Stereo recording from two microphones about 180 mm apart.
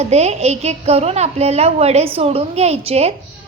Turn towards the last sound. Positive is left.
turn(degrees=-35)  # may be behind; listen again after turning